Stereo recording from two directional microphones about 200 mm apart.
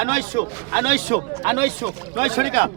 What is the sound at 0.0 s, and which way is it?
A man's voice, 40° right (ahead or behind).